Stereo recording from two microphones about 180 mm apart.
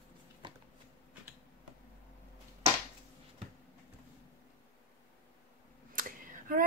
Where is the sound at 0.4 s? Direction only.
25° right (ahead or behind).